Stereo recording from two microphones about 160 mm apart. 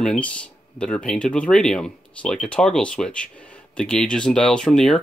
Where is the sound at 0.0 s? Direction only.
5° left (ahead or behind).